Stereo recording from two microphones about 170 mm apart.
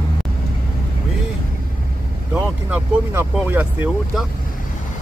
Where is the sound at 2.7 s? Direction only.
10° right (ahead or behind).